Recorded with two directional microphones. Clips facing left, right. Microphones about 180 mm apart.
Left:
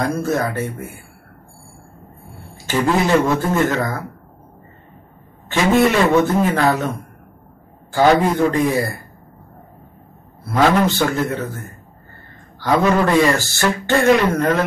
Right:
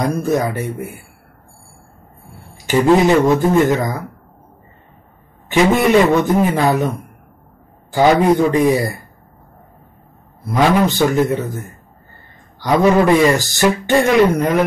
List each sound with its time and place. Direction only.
0.0 s a man's voice: 15° right (ahead or behind)
2.5 s a sound: 15° right (ahead or behind)
3.3 s a man's voice: 15° right (ahead or behind)
5.5 s a man's voice: 15° right (ahead or behind)
7.9 s a man's voice: 15° right (ahead or behind)
10.4 s a man's voice: 15° right (ahead or behind)
12.5 s a man's voice: 15° right (ahead or behind)